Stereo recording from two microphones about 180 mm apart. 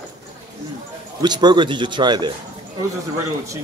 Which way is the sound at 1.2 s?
25° right (ahead or behind).